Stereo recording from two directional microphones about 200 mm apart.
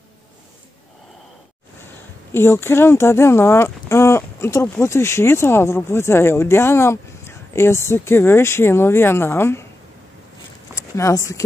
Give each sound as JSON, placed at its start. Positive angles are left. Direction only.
{"t": 2.3, "sound": "speech", "side_deg": 10}
{"t": 10.7, "sound": "speech", "side_deg": 15}